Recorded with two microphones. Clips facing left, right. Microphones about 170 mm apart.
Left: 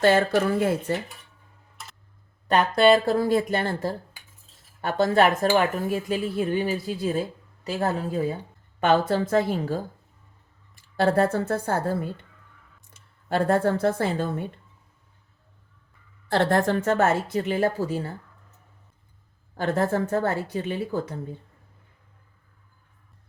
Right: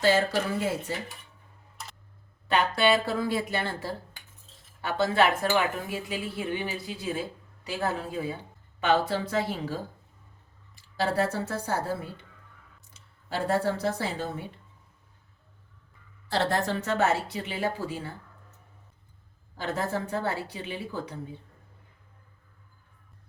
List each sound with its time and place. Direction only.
0.0 s speech: 55° left (ahead or behind)
2.5 s a woman's voice: 45° left (ahead or behind)
16.3 s a woman's voice: 55° left (ahead or behind)
19.5 s a woman's voice: 50° left (ahead or behind)